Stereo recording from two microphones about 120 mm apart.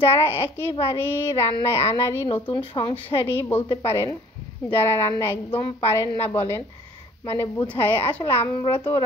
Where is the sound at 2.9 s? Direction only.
20° left (ahead or behind).